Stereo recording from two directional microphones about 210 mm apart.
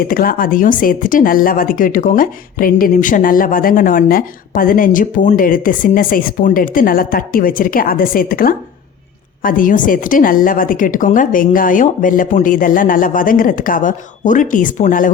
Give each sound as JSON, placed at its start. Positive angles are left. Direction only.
{"t": 0.0, "sound": "speech", "side_deg": 40}